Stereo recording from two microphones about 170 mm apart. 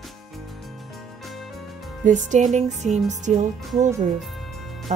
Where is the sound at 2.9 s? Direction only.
Centre (ahead or behind).